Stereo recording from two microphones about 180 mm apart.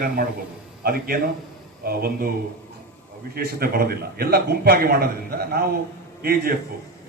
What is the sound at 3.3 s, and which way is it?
A man's voice, 55° right (ahead or behind).